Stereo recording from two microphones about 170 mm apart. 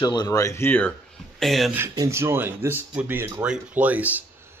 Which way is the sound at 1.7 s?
15° right (ahead or behind).